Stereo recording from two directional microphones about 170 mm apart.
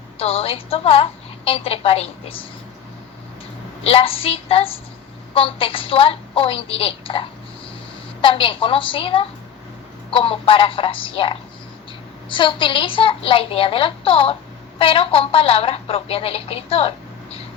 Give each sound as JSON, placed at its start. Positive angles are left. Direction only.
{"t": 0.2, "sound": "a woman's voice", "side_deg": 35}
{"t": 3.8, "sound": "a woman's voice", "side_deg": 35}